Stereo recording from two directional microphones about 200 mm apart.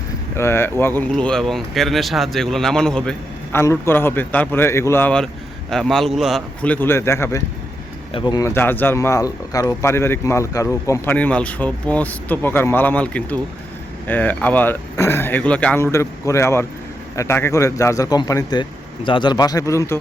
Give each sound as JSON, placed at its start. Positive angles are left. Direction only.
{"t": 0.3, "sound": "a man's voice", "side_deg": 15}